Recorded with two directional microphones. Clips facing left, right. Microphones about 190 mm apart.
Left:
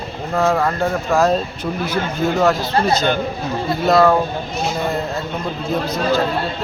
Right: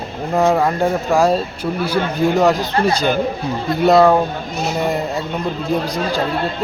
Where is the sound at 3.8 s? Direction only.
15° right (ahead or behind).